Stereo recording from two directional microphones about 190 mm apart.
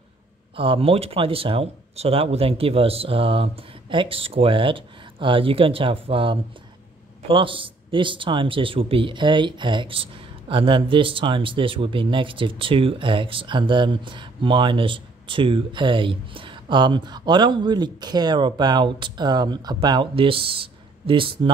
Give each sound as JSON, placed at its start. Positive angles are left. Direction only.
{"t": 0.6, "sound": "speech", "side_deg": -30}